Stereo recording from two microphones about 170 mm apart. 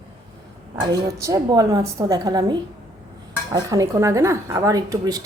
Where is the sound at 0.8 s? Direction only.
20° right (ahead or behind).